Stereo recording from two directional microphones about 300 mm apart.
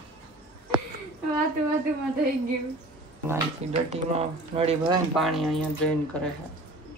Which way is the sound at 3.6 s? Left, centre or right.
Right.